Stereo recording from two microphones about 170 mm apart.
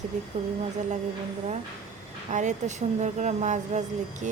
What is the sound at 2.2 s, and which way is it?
A woman's voice, 45° right (ahead or behind).